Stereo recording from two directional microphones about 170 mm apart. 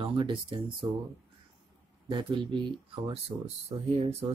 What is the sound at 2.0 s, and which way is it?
Speech, 25° right (ahead or behind).